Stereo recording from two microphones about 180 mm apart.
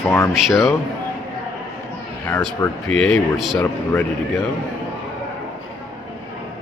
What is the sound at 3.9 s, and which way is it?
Speech, 15° left (ahead or behind).